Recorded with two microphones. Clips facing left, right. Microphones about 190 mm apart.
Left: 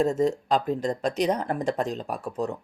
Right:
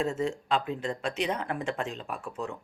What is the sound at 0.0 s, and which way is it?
Speech, 40° left (ahead or behind).